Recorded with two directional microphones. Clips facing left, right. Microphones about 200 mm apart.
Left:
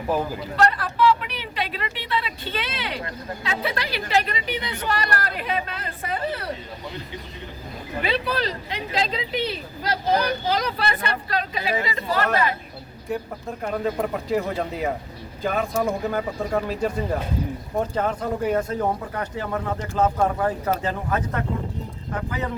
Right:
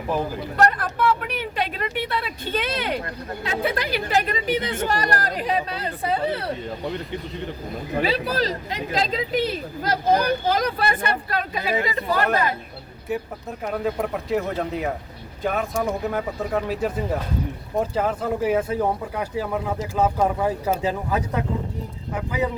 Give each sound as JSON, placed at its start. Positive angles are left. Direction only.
{"t": 0.3, "sound": "speech", "side_deg": -50}
{"t": 8.0, "sound": "speech", "side_deg": -40}
{"t": 13.7, "sound": "speech", "side_deg": 0}